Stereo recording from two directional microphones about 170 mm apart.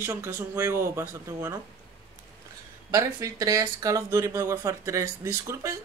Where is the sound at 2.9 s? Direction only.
20° right (ahead or behind).